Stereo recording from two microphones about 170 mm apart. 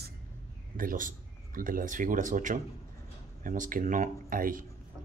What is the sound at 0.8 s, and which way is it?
Speech, 50° right (ahead or behind).